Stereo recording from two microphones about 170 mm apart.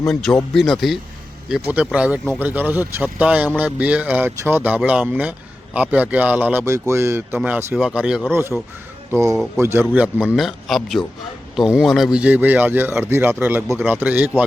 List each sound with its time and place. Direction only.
0.5 s speech: centre (ahead or behind)